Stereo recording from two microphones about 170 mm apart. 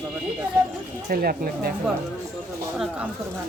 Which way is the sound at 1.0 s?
60° right (ahead or behind).